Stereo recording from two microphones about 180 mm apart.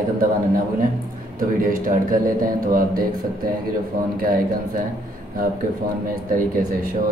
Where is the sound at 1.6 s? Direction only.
50° right (ahead or behind).